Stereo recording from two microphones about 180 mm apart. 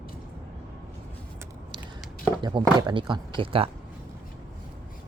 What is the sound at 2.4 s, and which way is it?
A man's voice, 25° right (ahead or behind).